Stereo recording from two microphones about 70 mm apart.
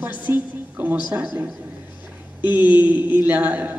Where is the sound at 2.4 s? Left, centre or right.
Right.